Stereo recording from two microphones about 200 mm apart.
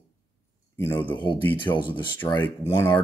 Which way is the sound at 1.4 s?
10° left (ahead or behind).